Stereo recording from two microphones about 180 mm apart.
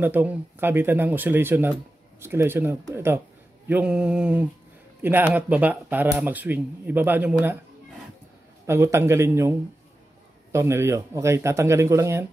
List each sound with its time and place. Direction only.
0.0 s speech: 10° right (ahead or behind)
8.6 s speech: 15° right (ahead or behind)